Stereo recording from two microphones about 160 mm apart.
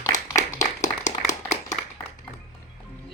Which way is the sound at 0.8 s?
50° left (ahead or behind).